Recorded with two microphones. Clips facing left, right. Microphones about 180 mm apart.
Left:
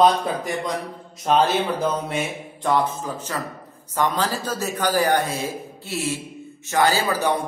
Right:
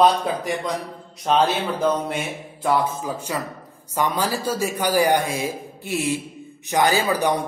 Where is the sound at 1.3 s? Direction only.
Centre (ahead or behind).